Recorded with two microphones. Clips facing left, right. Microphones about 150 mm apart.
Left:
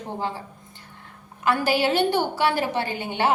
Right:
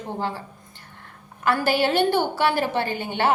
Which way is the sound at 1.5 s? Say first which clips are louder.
Even; 50° right (ahead or behind).